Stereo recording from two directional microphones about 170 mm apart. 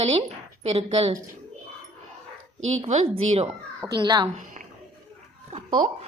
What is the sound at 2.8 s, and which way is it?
Speech, 40° right (ahead or behind).